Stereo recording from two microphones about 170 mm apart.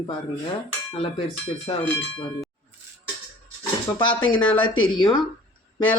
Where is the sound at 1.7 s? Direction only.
25° left (ahead or behind).